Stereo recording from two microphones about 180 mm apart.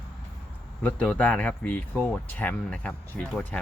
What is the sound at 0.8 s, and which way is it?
Speech, 5° left (ahead or behind).